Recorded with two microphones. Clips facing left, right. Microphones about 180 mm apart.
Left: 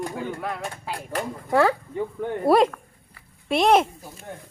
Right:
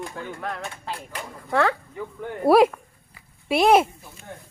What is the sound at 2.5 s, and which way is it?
A woman's voice, 5° right (ahead or behind).